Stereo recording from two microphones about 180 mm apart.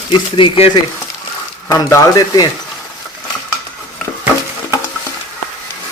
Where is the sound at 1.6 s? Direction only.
15° left (ahead or behind).